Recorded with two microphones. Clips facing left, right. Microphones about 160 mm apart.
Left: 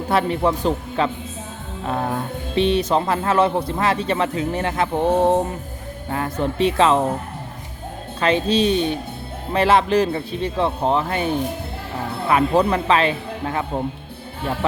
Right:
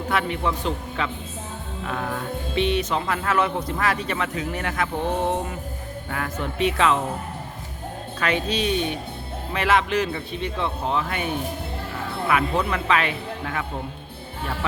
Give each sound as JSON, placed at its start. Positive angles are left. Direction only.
{"t": 0.1, "sound": "speech", "side_deg": 35}
{"t": 8.2, "sound": "speech", "side_deg": 30}
{"t": 12.3, "sound": "speech", "side_deg": 35}